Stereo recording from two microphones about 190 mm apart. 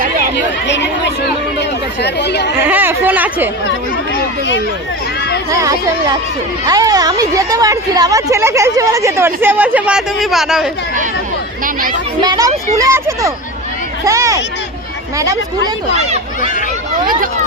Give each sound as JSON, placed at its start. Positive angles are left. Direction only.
{"t": 0.3, "sound": "chatter", "side_deg": 65}
{"t": 2.6, "sound": "speech", "side_deg": -10}
{"t": 5.5, "sound": "speech", "side_deg": -20}
{"t": 11.6, "sound": "speech", "side_deg": -45}
{"t": 12.2, "sound": "speech", "side_deg": -20}